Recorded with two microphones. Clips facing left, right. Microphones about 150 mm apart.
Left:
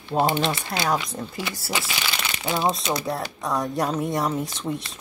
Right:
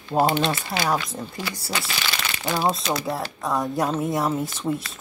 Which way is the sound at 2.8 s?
20° left (ahead or behind).